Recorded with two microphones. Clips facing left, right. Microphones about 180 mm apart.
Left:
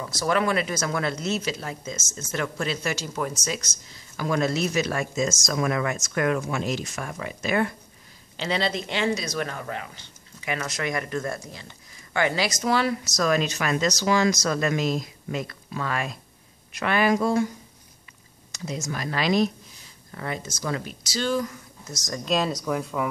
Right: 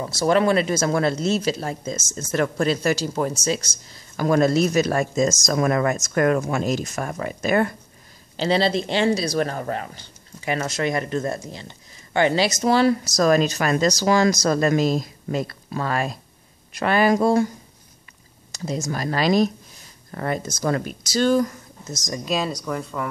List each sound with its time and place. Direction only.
0.0 s speech: 30° right (ahead or behind)
4.2 s speech: 45° right (ahead or behind)
8.4 s speech: 30° right (ahead or behind)
18.5 s speech: 35° right (ahead or behind)
21.8 s speech: 20° right (ahead or behind)
22.2 s speech: centre (ahead or behind)